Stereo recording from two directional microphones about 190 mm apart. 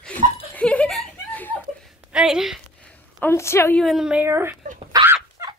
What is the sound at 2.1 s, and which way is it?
Speech, 5° right (ahead or behind).